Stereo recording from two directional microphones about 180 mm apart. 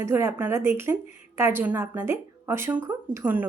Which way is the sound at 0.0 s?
15° right (ahead or behind).